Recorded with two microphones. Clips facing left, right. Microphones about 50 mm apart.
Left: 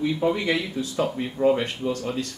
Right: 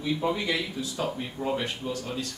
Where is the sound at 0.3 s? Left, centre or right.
Left.